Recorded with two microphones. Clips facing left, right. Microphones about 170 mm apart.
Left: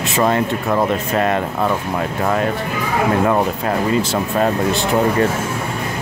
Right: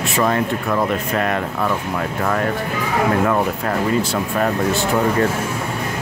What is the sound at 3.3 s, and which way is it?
Speech, 25° left (ahead or behind).